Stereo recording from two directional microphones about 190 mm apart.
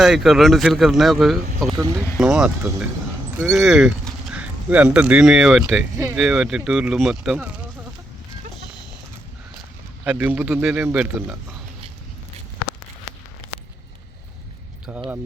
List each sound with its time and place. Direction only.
0.0 s speech: centre (ahead or behind)
1.7 s speech: 20° right (ahead or behind)
2.1 s a man's voice: 5° right (ahead or behind)
10.0 s a man's voice: 5° right (ahead or behind)
14.9 s speech: 5° right (ahead or behind)